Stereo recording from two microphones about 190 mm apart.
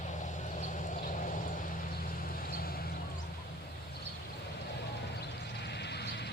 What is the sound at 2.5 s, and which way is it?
Vehicle, 50° left (ahead or behind).